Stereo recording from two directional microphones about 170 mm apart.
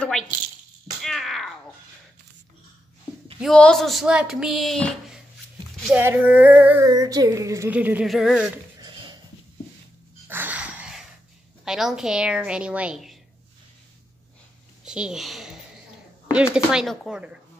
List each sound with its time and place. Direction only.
1.0 s a sound: centre (ahead or behind)
3.3 s speech: 5° left (ahead or behind)
5.9 s a woman's voice: 10° right (ahead or behind)
6.9 s a woman's voice: 20° right (ahead or behind); by 8.5 s centre (ahead or behind)
8.8 s a sound: 25° right (ahead or behind)
10.2 s a sound: 10° right (ahead or behind)
11.6 s speech: 5° right (ahead or behind)
14.9 s a child's voice: 5° right (ahead or behind)
16.5 s speech: centre (ahead or behind)